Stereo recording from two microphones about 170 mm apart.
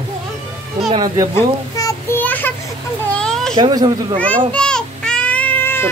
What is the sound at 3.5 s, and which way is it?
Speech, 25° right (ahead or behind).